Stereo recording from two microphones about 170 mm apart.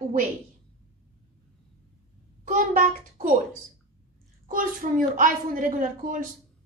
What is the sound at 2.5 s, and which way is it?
Speech, 50° right (ahead or behind).